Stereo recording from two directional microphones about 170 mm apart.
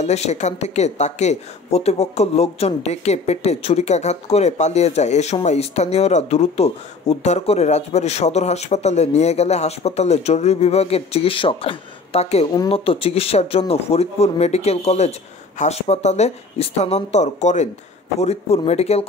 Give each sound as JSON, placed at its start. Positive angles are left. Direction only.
{"t": 0.0, "sound": "speech", "side_deg": 40}